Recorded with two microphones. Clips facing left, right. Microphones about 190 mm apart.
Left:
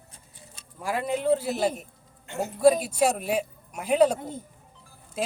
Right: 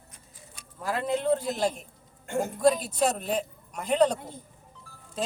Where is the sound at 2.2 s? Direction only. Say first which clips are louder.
Right 2 dB; 50° right (ahead or behind).